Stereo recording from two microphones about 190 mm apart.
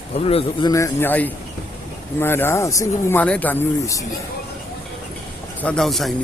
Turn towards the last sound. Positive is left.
turn(degrees=0)  # may be behind; listen again after turning